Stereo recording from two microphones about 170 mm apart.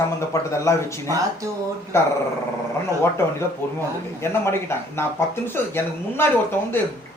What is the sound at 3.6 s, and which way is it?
Speech, 15° left (ahead or behind).